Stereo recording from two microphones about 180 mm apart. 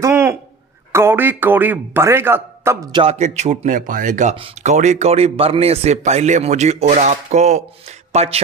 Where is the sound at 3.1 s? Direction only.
40° right (ahead or behind).